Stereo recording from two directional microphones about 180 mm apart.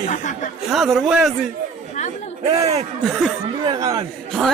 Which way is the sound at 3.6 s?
20° right (ahead or behind).